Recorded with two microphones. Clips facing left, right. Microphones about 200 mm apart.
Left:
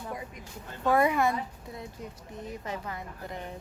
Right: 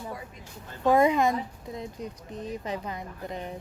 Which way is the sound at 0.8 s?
20° right (ahead or behind).